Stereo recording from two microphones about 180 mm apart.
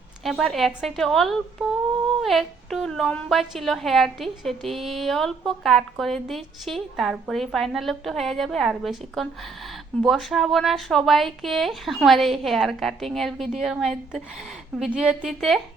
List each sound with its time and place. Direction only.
0.3 s a woman's voice: centre (ahead or behind)